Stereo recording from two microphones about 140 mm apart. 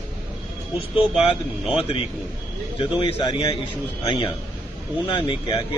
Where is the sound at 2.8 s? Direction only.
35° left (ahead or behind).